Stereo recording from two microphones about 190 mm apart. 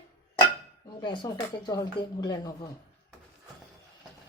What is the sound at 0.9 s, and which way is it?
Speech, 25° left (ahead or behind).